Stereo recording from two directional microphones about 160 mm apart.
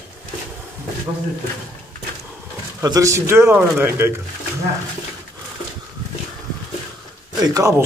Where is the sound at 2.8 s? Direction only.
20° right (ahead or behind).